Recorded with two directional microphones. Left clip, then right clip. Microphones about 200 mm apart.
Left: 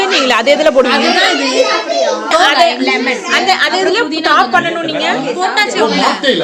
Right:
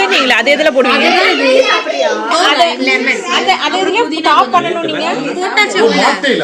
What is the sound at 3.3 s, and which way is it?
A woman's voice, 20° left (ahead or behind).